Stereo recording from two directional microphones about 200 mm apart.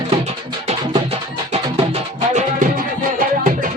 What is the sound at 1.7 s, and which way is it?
Music, 35° right (ahead or behind).